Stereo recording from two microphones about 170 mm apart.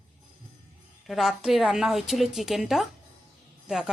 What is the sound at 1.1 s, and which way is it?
Speech, centre (ahead or behind).